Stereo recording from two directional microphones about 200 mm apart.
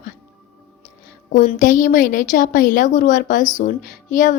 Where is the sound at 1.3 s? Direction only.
40° left (ahead or behind).